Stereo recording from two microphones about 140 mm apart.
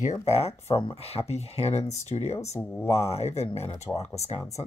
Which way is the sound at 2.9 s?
45° left (ahead or behind).